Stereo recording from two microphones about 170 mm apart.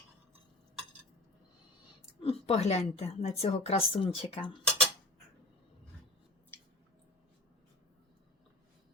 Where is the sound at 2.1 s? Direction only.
35° left (ahead or behind).